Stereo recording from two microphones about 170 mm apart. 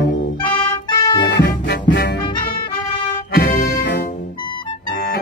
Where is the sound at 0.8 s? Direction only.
25° left (ahead or behind).